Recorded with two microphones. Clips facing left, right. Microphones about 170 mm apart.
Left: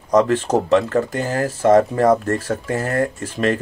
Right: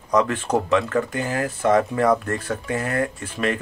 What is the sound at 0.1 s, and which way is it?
Speech, 40° left (ahead or behind).